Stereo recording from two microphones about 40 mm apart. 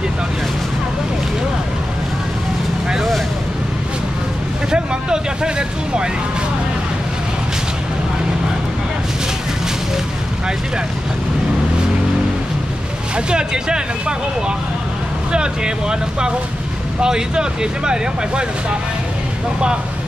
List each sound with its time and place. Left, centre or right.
4.6 s vehicle: centre
13.1 s speech: right
15.3 s speech: right